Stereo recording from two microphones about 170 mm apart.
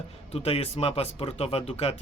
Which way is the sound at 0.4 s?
35° left (ahead or behind).